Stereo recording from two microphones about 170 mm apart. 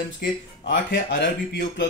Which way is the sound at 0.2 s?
80° left.